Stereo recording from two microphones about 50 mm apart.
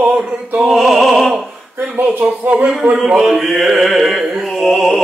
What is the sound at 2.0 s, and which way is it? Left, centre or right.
Speech, right.